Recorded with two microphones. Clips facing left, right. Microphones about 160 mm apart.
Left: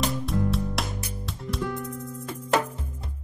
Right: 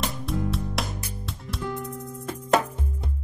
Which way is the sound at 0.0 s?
Centre (ahead or behind).